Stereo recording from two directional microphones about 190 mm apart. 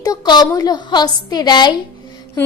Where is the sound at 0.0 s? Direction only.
20° left (ahead or behind).